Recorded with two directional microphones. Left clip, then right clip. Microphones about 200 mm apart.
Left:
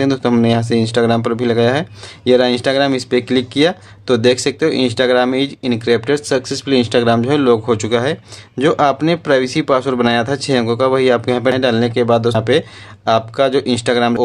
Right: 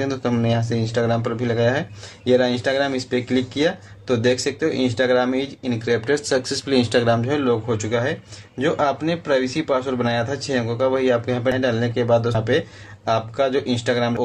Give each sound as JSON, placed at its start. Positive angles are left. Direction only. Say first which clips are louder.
{"t": 0.0, "sound": "speech", "louder": "left 8 dB", "side_deg": 35}